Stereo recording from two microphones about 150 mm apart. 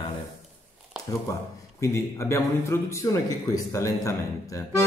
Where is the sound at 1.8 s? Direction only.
15° left (ahead or behind).